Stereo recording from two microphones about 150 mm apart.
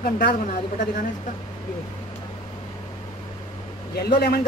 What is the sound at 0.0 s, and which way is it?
Speech, 80° left.